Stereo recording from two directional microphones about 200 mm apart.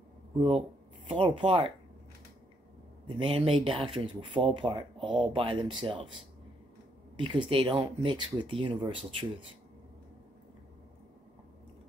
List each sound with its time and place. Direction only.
0.4 s speech: 25° right (ahead or behind)
3.2 s speech: 30° right (ahead or behind)
7.2 s speech: 25° right (ahead or behind)